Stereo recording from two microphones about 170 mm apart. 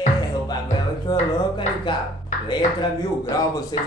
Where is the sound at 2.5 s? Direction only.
25° left (ahead or behind).